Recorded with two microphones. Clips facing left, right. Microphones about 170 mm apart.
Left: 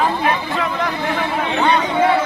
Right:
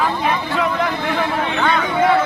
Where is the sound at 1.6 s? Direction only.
20° left (ahead or behind).